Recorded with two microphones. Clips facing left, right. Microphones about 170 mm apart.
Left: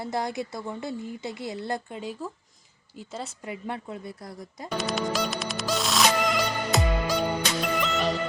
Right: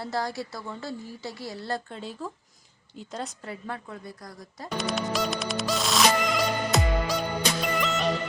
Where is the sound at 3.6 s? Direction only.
20° left (ahead or behind).